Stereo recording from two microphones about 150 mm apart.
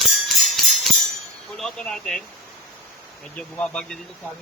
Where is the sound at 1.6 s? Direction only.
5° left (ahead or behind).